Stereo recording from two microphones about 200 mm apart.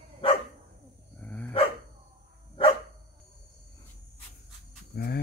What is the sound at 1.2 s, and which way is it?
Dog, 5° left (ahead or behind).